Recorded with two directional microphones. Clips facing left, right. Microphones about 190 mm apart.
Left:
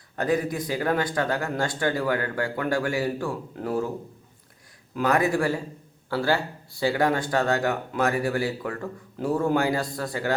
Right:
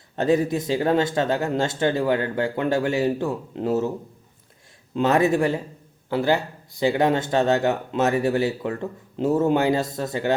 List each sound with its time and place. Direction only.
0.2 s speech: 25° right (ahead or behind)
4.9 s speech: 25° right (ahead or behind)